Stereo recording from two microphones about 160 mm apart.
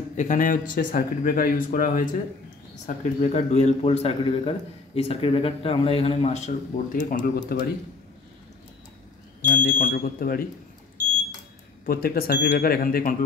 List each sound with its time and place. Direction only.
0.2 s speech: 55° left (ahead or behind)
2.9 s a man's voice: 45° left (ahead or behind)
9.6 s speech: 60° left (ahead or behind)
11.8 s speech: 65° left (ahead or behind)